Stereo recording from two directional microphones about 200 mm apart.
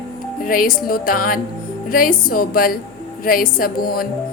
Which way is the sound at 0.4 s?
45° left (ahead or behind).